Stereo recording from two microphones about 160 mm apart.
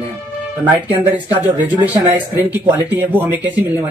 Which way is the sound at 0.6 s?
10° right (ahead or behind).